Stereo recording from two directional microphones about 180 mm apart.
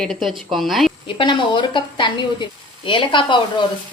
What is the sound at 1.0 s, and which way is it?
Speech, 25° left (ahead or behind).